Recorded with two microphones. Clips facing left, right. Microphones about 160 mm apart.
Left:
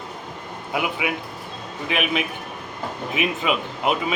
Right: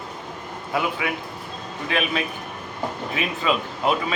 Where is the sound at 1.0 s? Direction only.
10° left (ahead or behind).